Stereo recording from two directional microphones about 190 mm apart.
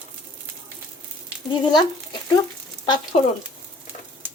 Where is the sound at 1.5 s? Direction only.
25° left (ahead or behind).